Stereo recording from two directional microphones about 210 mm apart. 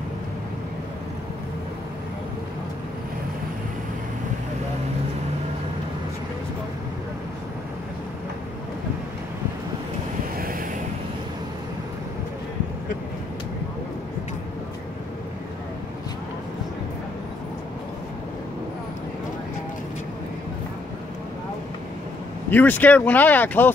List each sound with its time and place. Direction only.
10.3 s vehicle: 45° right (ahead or behind)
22.5 s speech: 10° left (ahead or behind)